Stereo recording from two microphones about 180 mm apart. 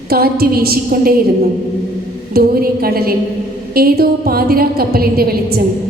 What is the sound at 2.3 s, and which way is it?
A woman's voice, 55° right (ahead or behind).